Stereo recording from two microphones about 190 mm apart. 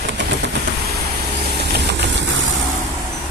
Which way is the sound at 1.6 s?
60° right (ahead or behind).